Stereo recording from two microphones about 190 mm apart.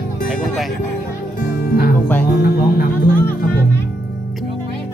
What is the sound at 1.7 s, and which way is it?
Music, 50° left (ahead or behind).